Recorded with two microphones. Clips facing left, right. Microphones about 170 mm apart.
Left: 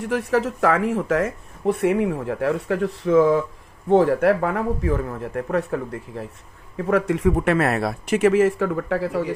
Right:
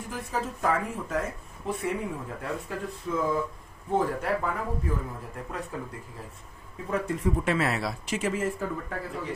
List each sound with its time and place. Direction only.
0.0 s speech: 80° left
6.8 s speech: 85° left